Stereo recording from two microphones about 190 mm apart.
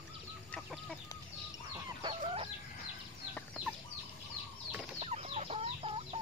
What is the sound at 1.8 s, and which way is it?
Chicken, 25° right (ahead or behind).